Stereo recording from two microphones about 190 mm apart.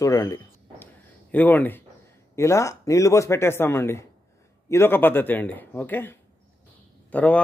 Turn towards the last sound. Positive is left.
turn(degrees=5)  # may be behind; listen again after turning